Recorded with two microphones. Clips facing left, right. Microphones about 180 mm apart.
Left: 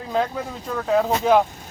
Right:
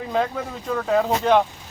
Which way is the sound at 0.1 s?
Centre (ahead or behind).